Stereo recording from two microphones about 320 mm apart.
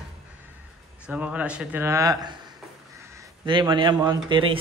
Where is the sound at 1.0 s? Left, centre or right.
Centre.